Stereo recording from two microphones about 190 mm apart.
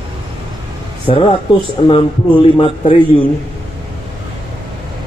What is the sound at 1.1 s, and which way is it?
Speech, 30° left (ahead or behind).